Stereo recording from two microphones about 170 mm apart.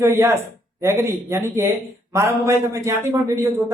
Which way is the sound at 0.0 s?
15° right (ahead or behind).